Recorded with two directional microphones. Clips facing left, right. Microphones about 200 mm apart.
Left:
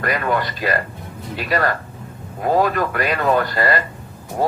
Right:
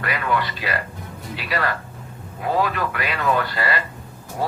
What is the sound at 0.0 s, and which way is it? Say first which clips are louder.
A man's voice: left 3 dB; 45° left (ahead or behind).